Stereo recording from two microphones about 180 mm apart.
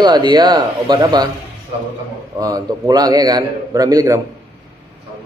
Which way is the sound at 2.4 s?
20° right (ahead or behind).